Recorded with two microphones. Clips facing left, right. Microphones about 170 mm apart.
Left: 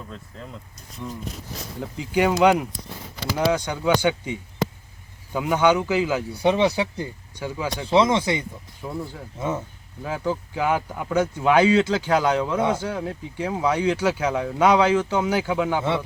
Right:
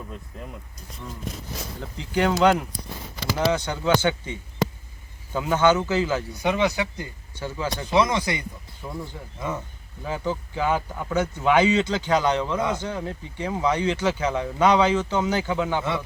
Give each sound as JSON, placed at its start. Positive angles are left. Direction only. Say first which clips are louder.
{"t": 0.3, "sound": "speech", "louder": "right 1 dB", "side_deg": -15}
{"t": 2.0, "sound": "speech", "louder": "left 2 dB", "side_deg": 10}
{"t": 6.3, "sound": "speech", "louder": "left 5 dB", "side_deg": 30}
{"t": 7.3, "sound": "speech", "louder": "left 1 dB", "side_deg": 10}
{"t": 7.9, "sound": "speech", "louder": "left 3 dB", "side_deg": 25}
{"t": 8.8, "sound": "speech", "louder": "left 3 dB", "side_deg": 5}